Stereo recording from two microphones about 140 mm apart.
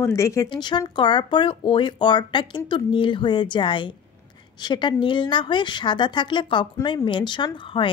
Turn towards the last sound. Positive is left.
turn(degrees=40)  # may be behind; listen again after turning